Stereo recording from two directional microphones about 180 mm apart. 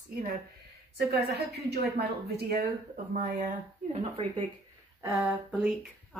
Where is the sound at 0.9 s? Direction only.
65° right (ahead or behind).